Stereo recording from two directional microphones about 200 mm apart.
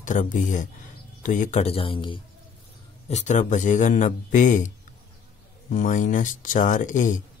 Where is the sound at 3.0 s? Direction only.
35° left (ahead or behind).